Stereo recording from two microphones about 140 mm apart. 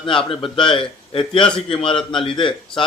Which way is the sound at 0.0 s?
40° left (ahead or behind).